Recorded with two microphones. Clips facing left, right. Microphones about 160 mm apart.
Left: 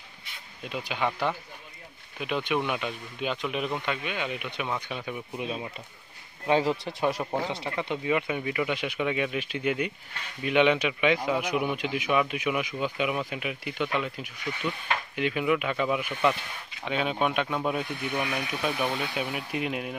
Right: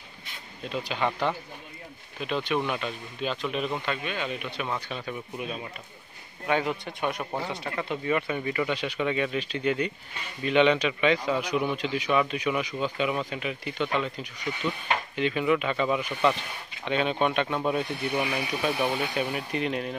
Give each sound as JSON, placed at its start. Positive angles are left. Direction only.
{"t": 0.7, "sound": "a man's voice", "side_deg": 10}
{"t": 6.4, "sound": "a man's voice", "side_deg": 30}
{"t": 18.3, "sound": "a man's voice", "side_deg": -10}